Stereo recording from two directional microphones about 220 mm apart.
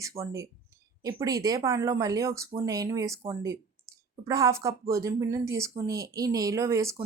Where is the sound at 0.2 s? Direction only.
25° right (ahead or behind).